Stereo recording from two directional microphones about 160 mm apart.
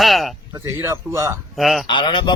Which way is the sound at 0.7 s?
20° right (ahead or behind).